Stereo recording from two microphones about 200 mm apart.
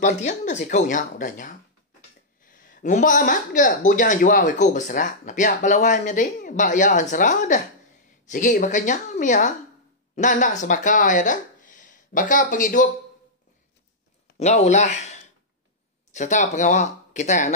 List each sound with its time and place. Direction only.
0.0 s speech: 35° left (ahead or behind)
14.3 s speech: 30° left (ahead or behind)